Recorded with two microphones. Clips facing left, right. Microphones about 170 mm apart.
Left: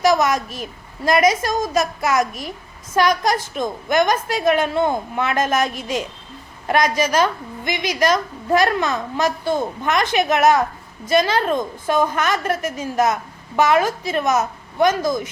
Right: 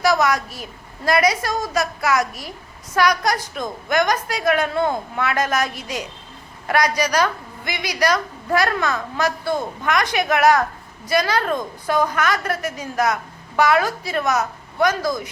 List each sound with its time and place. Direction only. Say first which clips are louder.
0.0 s a woman's voice: left 2 dB; 20° left (ahead or behind)